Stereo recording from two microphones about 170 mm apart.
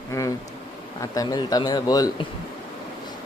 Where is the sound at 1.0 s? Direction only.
20° left (ahead or behind).